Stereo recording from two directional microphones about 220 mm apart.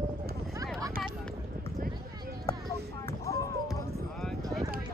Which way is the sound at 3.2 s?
15° left (ahead or behind).